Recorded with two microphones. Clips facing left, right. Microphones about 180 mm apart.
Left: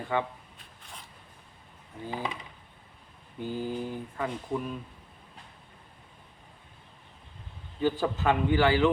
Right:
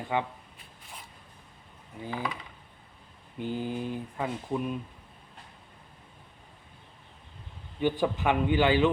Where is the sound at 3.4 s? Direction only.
20° right (ahead or behind).